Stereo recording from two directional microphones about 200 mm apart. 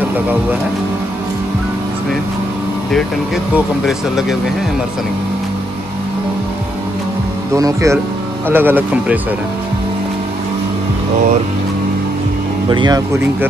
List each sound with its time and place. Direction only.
3.5 s speech: centre (ahead or behind)
7.5 s speech: 15° right (ahead or behind)
12.6 s speech: 20° right (ahead or behind)